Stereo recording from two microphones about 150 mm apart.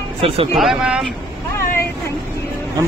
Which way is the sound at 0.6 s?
5° right (ahead or behind).